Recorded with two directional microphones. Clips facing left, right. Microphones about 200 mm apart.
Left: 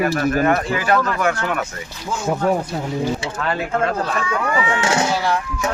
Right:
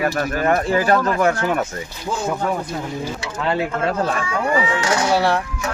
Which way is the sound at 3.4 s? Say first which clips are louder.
Right 2 dB; 20° right (ahead or behind).